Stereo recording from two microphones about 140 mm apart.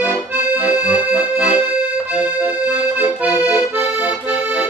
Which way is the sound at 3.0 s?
10° right (ahead or behind).